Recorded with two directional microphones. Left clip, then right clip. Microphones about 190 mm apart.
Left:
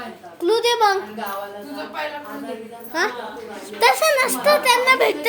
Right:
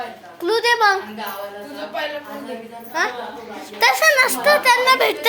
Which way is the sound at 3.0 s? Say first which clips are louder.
Right 1 dB; 35° left (ahead or behind).